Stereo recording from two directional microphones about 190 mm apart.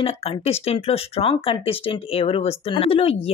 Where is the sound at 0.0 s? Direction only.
30° left (ahead or behind).